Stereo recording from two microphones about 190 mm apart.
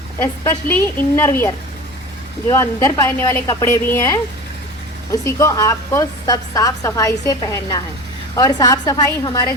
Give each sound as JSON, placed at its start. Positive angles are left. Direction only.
{"t": 0.2, "sound": "a woman's voice", "side_deg": 10}
{"t": 5.2, "sound": "a woman's voice", "side_deg": 15}